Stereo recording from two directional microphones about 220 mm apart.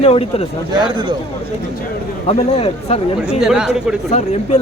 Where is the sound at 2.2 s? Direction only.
30° left (ahead or behind).